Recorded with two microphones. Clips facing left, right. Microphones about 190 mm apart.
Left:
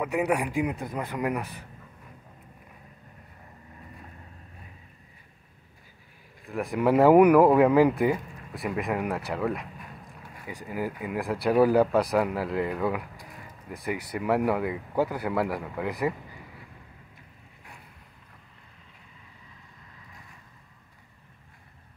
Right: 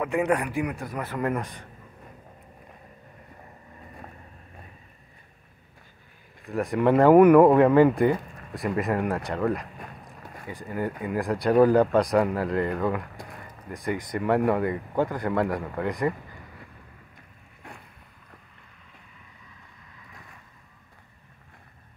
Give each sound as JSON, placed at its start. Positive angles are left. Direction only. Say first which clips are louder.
{"t": 0.0, "sound": "speech", "louder": "right 2 dB", "side_deg": 10}
{"t": 6.4, "sound": "speech", "louder": "right 2 dB", "side_deg": 0}